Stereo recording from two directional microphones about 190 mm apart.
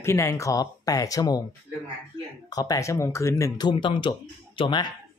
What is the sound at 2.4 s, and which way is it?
Speech, 20° left (ahead or behind).